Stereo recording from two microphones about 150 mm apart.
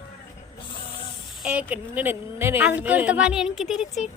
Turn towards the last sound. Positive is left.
turn(degrees=0)  # may be behind; listen again after turning